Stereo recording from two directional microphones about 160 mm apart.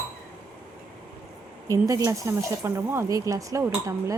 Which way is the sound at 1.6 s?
20° right (ahead or behind).